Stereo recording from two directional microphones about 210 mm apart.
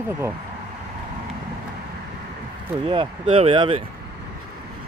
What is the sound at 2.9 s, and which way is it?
Speech, 25° right (ahead or behind).